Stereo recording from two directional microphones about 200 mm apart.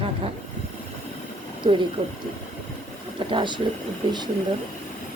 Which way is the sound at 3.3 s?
25° right (ahead or behind).